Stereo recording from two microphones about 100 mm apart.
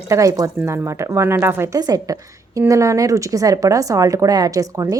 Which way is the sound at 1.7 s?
35° right (ahead or behind).